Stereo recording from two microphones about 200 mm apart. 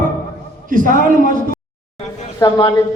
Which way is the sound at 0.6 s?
40° right (ahead or behind).